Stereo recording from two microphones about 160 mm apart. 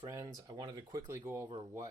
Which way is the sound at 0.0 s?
20° right (ahead or behind).